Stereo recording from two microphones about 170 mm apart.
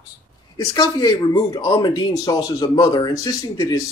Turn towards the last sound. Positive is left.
turn(degrees=20)  # may be behind; listen again after turning